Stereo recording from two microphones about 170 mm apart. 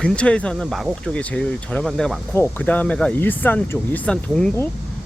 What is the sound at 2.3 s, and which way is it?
Speech, 10° left (ahead or behind).